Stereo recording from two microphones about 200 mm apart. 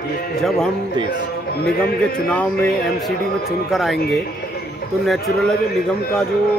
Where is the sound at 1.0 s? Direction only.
20° right (ahead or behind).